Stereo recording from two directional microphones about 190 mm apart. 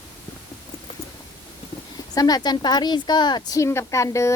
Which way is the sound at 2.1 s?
20° left (ahead or behind).